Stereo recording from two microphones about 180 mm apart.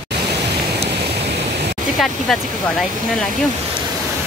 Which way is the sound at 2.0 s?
Centre (ahead or behind).